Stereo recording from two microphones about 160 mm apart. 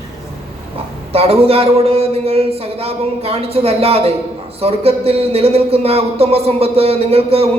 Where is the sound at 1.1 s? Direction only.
40° right (ahead or behind).